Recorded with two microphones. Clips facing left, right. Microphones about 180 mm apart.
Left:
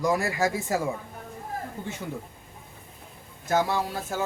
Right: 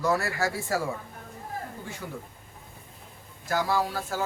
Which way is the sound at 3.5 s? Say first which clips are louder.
Left 2 dB; 20° left (ahead or behind).